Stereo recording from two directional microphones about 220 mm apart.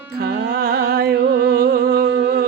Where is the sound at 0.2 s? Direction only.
45° right (ahead or behind).